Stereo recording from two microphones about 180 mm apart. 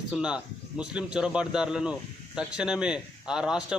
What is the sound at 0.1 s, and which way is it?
Speech, 5° right (ahead or behind).